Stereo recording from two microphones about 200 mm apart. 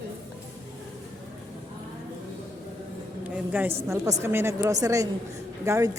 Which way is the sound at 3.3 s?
10° right (ahead or behind).